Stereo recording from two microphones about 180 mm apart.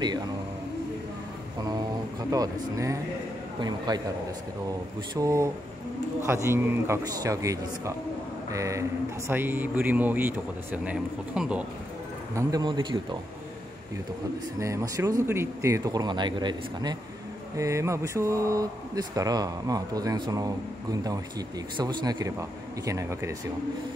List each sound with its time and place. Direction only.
1.6 s speech: 20° right (ahead or behind)
5.1 s a man's voice: 15° right (ahead or behind)
12.4 s speech: 20° right (ahead or behind)
14.6 s speech: 15° right (ahead or behind)